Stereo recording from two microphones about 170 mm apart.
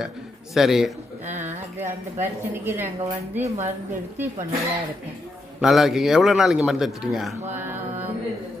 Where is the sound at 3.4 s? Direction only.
40° right (ahead or behind).